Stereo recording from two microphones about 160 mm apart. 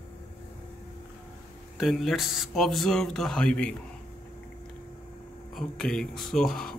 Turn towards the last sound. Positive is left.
turn(degrees=5)  # may be behind; listen again after turning